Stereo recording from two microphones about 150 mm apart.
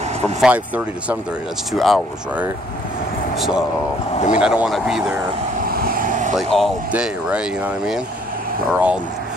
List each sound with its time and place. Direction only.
0.4 s speech: 10° right (ahead or behind)
3.3 s speech: 5° right (ahead or behind)
5.6 s vehicle: 80° right; by 6.3 s 60° right (ahead or behind)
6.3 s speech: centre (ahead or behind)